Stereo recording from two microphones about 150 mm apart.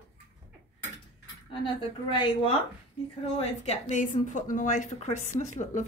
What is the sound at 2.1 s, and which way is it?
Speech, 35° left (ahead or behind).